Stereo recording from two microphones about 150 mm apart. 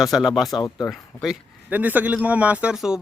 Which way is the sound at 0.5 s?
25° left (ahead or behind).